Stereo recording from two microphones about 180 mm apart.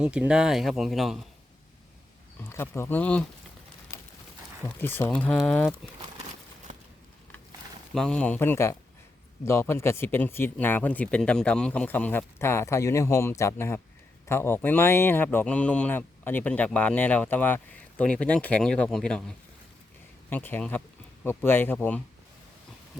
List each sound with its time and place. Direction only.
0.0 s speech: 5° right (ahead or behind)
2.4 s speech: 15° left (ahead or behind)
3.9 s horse: 15° left (ahead or behind)
4.8 s speech: 10° left (ahead or behind)
7.9 s speech: 5° left (ahead or behind)
20.3 s speech: 10° left (ahead or behind)